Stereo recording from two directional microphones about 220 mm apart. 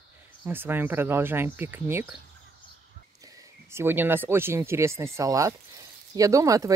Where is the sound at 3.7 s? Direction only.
10° right (ahead or behind).